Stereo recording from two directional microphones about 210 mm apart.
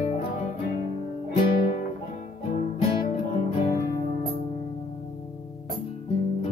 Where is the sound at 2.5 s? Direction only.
30° left (ahead or behind).